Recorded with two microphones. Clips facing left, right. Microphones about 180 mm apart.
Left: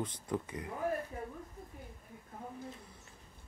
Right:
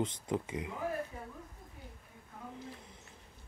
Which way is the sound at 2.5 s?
20° right (ahead or behind).